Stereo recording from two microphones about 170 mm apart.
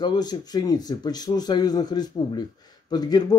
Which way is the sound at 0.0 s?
25° left (ahead or behind).